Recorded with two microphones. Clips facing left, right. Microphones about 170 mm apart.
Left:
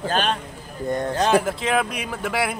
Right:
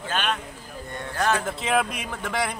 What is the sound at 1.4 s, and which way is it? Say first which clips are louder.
Speech: left 2 dB; centre (ahead or behind).